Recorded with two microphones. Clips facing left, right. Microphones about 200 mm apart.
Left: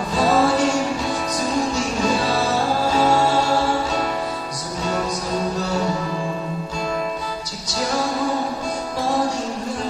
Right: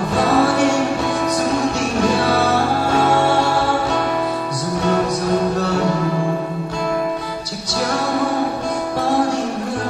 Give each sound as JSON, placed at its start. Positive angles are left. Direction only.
{"t": 0.1, "sound": "music", "side_deg": -60}